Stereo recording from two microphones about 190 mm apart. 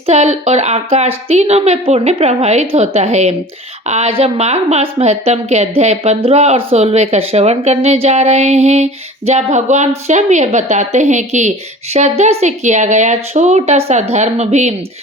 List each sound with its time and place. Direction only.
0.0 s a woman's voice: 35° right (ahead or behind)